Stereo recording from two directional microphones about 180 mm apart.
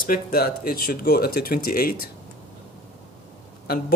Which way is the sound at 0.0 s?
55° left (ahead or behind).